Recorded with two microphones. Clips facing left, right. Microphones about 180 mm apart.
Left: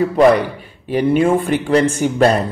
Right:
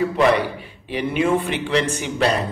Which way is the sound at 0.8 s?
45° left (ahead or behind).